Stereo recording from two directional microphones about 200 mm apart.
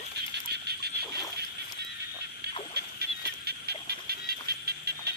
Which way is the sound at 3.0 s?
55° right (ahead or behind).